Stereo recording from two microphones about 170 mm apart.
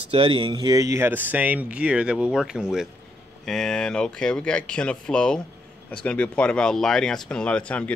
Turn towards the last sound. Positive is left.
turn(degrees=5)  # may be behind; listen again after turning